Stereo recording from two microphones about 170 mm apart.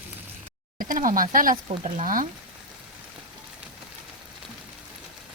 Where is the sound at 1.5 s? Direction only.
30° right (ahead or behind).